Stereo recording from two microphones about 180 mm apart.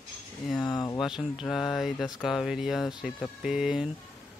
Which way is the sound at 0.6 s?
20° left (ahead or behind).